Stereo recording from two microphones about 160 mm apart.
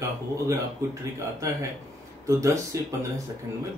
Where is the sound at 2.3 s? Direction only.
20° right (ahead or behind).